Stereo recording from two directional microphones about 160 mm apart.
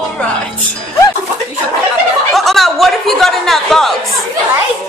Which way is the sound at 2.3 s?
Centre (ahead or behind).